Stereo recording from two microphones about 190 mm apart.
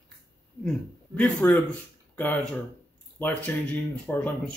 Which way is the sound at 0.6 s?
5° left (ahead or behind).